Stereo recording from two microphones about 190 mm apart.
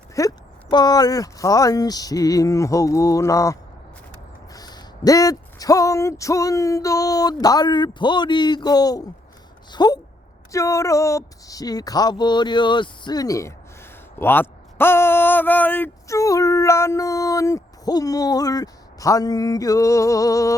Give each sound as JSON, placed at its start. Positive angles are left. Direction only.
{"t": 0.2, "sound": "speech", "side_deg": 20}